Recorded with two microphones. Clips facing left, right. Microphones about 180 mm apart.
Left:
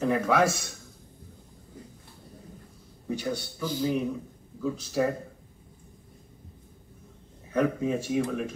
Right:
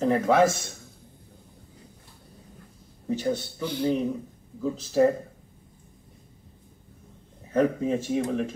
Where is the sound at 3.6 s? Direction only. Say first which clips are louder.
Left 3 dB; 65° right (ahead or behind).